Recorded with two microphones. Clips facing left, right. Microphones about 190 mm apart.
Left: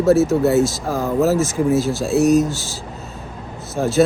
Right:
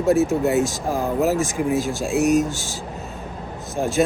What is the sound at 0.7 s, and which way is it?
Speech, 15° right (ahead or behind).